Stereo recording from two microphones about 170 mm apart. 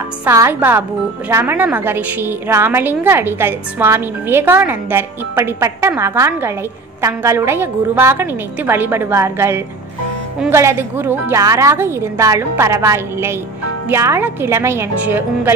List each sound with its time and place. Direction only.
0.2 s a woman's voice: 15° right (ahead or behind)